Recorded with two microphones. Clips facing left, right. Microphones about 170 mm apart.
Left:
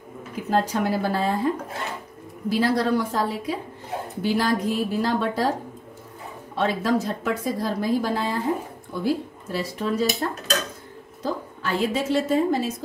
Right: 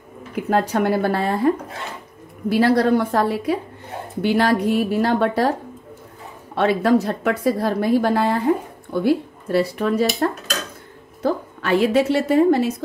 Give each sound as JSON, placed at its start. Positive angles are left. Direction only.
{"t": 0.5, "sound": "a woman's voice", "side_deg": -60}
{"t": 2.5, "sound": "a woman's voice", "side_deg": -60}
{"t": 6.5, "sound": "a woman's voice", "side_deg": -65}